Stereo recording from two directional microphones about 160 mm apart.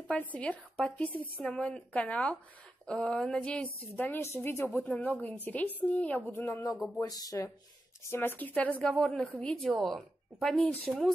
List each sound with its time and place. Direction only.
0.1 s a woman's voice: 10° left (ahead or behind)
6.7 s a woman's voice: centre (ahead or behind)
7.0 s a woman's voice: 25° left (ahead or behind); by 11.1 s centre (ahead or behind)